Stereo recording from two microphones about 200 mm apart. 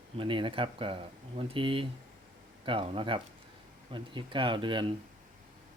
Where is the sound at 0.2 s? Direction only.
25° right (ahead or behind).